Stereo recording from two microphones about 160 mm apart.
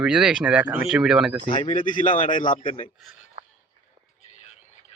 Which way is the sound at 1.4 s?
35° left (ahead or behind).